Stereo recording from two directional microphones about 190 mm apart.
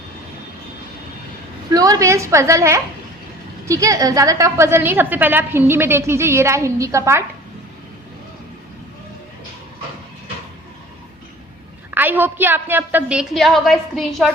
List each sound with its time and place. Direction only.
1.7 s a woman's voice: 20° right (ahead or behind)
11.9 s a woman's voice: 10° right (ahead or behind)